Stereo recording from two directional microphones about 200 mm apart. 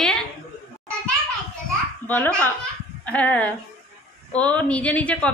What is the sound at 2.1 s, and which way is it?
A woman's voice, 5° left (ahead or behind).